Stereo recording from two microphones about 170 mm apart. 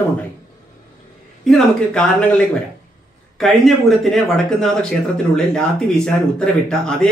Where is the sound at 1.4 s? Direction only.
5° left (ahead or behind).